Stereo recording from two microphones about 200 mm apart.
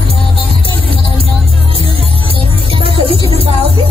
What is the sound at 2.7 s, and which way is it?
Music, 25° right (ahead or behind).